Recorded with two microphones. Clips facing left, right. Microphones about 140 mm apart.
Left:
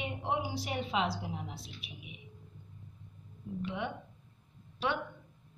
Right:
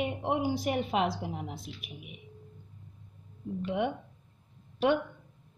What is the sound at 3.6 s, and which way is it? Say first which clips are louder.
Speech: right 7 dB; 55° right (ahead or behind).